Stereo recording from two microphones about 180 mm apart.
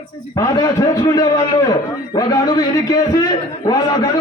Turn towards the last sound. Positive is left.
turn(degrees=20)  # may be behind; listen again after turning